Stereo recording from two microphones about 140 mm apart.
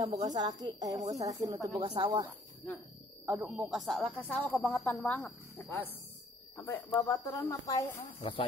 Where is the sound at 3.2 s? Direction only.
15° right (ahead or behind).